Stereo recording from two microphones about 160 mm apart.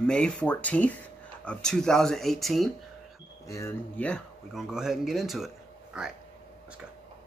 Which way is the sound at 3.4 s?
20° left (ahead or behind).